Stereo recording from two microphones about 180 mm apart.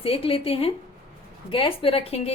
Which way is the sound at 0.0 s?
30° left (ahead or behind).